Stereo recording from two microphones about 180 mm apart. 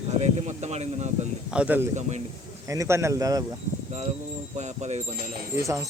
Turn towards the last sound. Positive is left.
turn(degrees=-15)  # may be behind; listen again after turning